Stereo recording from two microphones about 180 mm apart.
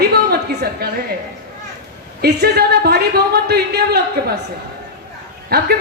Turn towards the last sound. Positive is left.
turn(degrees=-60)  # may be behind; listen again after turning